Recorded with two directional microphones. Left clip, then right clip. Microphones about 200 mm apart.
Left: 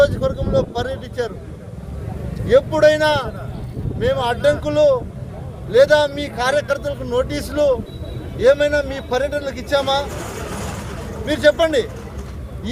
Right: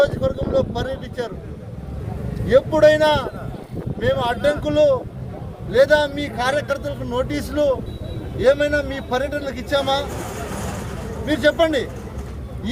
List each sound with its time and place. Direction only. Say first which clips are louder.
0.0 s vehicle: left 2 dB; 10° left (ahead or behind)
2.5 s speech: left 1 dB; 5° left (ahead or behind)
10.3 s vehicle: left 1 dB; 45° right (ahead or behind)
11.3 s speech: left 2 dB; 5° left (ahead or behind)